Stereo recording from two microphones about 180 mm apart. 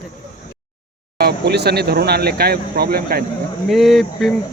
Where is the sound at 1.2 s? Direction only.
65° right (ahead or behind).